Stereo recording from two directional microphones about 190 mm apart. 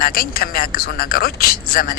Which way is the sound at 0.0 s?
50° left (ahead or behind).